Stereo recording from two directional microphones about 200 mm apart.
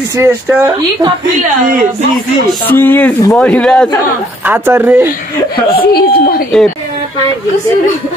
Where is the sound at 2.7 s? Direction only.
10° left (ahead or behind).